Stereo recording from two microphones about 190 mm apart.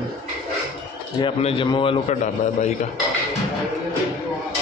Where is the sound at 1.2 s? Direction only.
25° left (ahead or behind).